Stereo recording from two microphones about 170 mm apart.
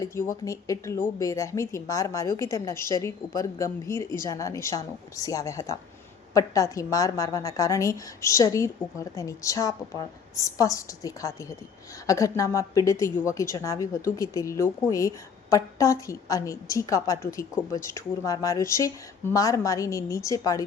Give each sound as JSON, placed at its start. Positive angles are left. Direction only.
{"t": 0.0, "sound": "a woman's voice", "side_deg": 20}